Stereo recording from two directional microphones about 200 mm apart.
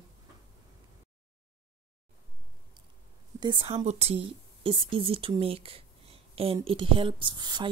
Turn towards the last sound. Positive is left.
turn(degrees=-20)  # may be behind; listen again after turning